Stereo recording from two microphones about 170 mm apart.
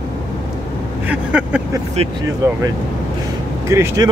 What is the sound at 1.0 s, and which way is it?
Speech, 10° right (ahead or behind).